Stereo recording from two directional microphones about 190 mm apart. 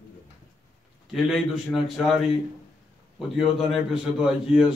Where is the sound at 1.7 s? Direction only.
Centre (ahead or behind).